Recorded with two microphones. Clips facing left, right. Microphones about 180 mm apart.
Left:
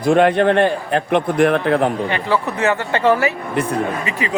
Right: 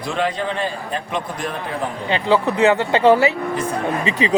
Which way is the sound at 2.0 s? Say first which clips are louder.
Right 2 dB; 20° right (ahead or behind).